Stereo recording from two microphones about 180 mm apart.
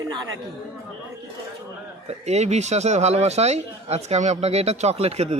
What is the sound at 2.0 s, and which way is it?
Speech, 40° right (ahead or behind).